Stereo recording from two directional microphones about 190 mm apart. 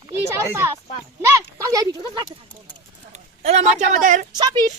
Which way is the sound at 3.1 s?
35° right (ahead or behind).